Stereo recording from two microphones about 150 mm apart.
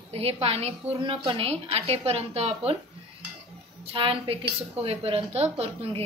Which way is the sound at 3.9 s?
35° right (ahead or behind).